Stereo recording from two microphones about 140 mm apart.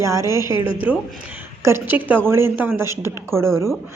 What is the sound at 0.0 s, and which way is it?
Speech, 20° right (ahead or behind).